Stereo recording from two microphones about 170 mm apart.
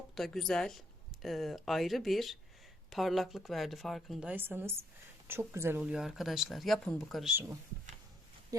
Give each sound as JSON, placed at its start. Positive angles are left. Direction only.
{"t": 0.2, "sound": "speech", "side_deg": 0}